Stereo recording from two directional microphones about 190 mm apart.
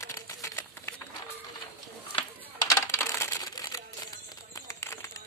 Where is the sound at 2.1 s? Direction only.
15° left (ahead or behind).